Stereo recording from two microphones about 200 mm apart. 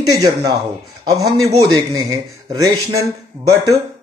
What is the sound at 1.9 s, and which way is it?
Speech, 20° right (ahead or behind).